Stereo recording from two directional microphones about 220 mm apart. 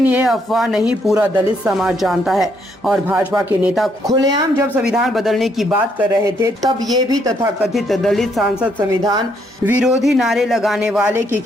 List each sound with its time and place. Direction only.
0.0 s speech: 5° right (ahead or behind)
4.1 s speech: 20° right (ahead or behind)
4.7 s speech: 5° right (ahead or behind)
7.6 s speech: centre (ahead or behind)